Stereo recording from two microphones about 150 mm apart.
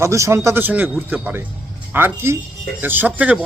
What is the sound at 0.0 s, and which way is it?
A man's voice, 20° right (ahead or behind).